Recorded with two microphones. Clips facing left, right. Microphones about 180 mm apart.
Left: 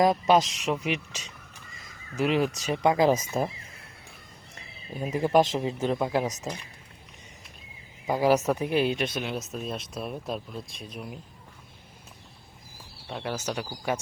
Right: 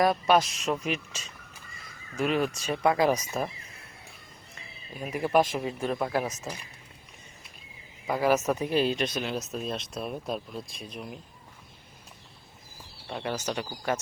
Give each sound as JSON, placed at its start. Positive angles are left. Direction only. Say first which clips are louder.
{"t": 0.0, "sound": "speech", "louder": "left 2 dB", "side_deg": 20}
{"t": 4.5, "sound": "a sound", "louder": "left 5 dB", "side_deg": 30}
{"t": 5.4, "sound": "speech", "louder": "left 1 dB", "side_deg": 20}
{"t": 8.0, "sound": "a woman's voice", "louder": "left 2 dB", "side_deg": 20}
{"t": 9.1, "sound": "speech", "louder": "even", "side_deg": 0}
{"t": 13.1, "sound": "speech", "louder": "even", "side_deg": 0}